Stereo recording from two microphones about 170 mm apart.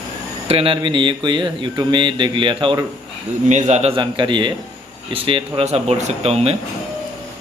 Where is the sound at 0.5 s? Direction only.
30° right (ahead or behind).